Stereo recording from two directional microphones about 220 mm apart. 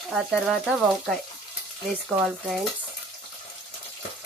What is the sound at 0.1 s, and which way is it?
Speech, centre (ahead or behind).